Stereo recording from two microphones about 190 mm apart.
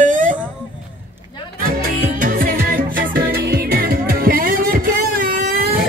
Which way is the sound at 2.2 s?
50° right (ahead or behind).